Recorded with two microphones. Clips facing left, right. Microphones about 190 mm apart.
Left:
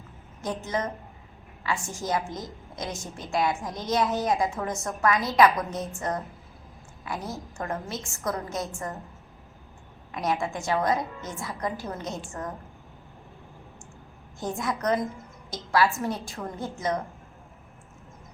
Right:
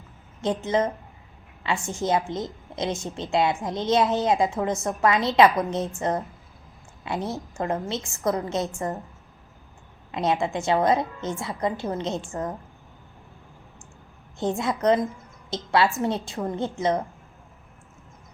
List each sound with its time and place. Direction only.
0.4 s a woman's voice: 25° right (ahead or behind)
10.1 s a woman's voice: 25° right (ahead or behind)
14.3 s a woman's voice: 25° right (ahead or behind)